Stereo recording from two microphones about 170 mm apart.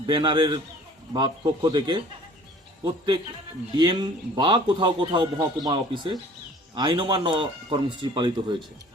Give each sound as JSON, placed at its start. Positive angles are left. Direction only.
{"t": 0.0, "sound": "speech", "side_deg": -30}
{"t": 3.8, "sound": "speech", "side_deg": -25}